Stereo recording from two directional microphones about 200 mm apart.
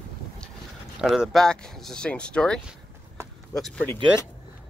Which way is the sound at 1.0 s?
Centre (ahead or behind).